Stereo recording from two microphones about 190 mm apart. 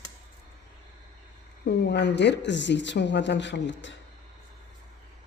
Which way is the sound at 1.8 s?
65° left (ahead or behind).